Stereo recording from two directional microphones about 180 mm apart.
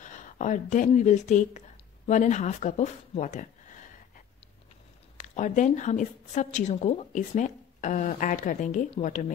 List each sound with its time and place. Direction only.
0.0 s speech: 45° left (ahead or behind)
5.1 s a woman's voice: 40° left (ahead or behind)